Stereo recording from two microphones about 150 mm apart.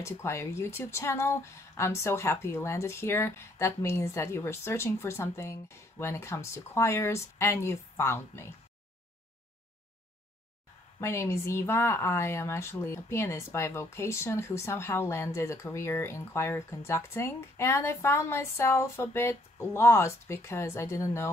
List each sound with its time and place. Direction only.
0.0 s speech: 20° left (ahead or behind)
11.0 s speech: 15° left (ahead or behind)